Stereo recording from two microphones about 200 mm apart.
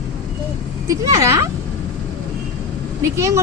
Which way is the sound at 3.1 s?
15° right (ahead or behind).